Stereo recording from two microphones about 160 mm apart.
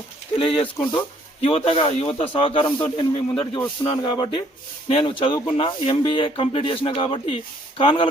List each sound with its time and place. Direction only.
0.3 s speech: 35° left (ahead or behind)